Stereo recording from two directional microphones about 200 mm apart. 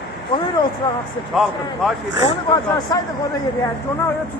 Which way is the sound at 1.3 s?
Centre (ahead or behind).